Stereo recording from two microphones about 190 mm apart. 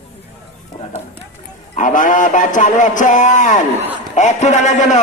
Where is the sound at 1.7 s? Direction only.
45° left (ahead or behind).